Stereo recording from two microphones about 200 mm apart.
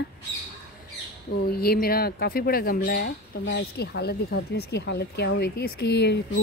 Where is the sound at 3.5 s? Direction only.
55° left (ahead or behind).